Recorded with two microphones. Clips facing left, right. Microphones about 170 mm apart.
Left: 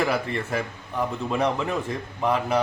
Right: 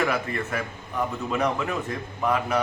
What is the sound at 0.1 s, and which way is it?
Speech, 30° left (ahead or behind).